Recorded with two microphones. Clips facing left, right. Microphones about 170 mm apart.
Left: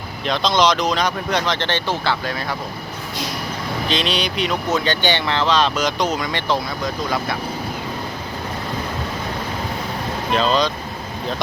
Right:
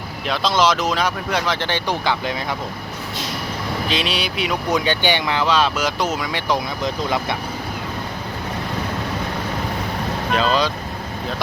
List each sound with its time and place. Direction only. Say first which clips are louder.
0.3 s speech: left 1 dB; 5° right (ahead or behind)
3.8 s speech: left 3 dB; 10° right (ahead or behind)
6.8 s speech: right 1 dB; 20° right (ahead or behind)
10.3 s speech: left 1 dB; 5° right (ahead or behind)